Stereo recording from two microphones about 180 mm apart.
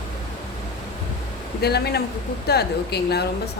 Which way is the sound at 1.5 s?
65° left (ahead or behind).